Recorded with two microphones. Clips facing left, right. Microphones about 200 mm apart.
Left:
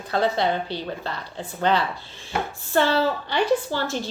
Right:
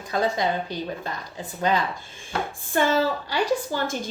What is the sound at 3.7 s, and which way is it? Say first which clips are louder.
Speech: left 1 dB; 45° right (ahead or behind).